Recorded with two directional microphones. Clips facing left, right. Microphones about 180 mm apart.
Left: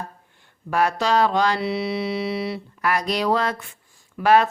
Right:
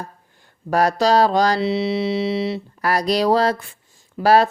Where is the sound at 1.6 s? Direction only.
25° right (ahead or behind).